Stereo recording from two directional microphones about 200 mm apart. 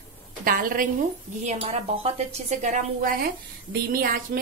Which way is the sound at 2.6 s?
40° right (ahead or behind).